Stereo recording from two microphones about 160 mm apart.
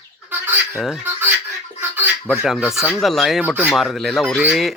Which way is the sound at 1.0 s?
10° right (ahead or behind).